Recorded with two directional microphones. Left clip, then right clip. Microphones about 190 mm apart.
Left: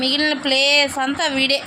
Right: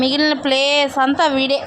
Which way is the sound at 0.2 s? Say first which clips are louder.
Right 2 dB; 10° right (ahead or behind).